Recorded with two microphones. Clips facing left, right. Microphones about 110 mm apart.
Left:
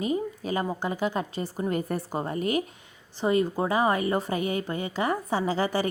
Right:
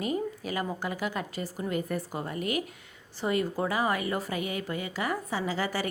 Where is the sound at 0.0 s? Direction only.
25° left (ahead or behind).